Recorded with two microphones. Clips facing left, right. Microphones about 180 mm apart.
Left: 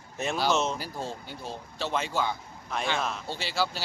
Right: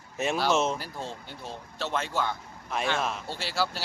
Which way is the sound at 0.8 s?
5° left (ahead or behind).